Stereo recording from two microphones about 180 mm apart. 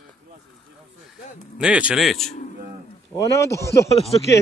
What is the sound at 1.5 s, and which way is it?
Speech, 5° right (ahead or behind).